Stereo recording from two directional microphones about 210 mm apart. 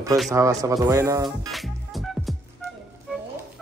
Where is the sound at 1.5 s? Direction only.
Centre (ahead or behind).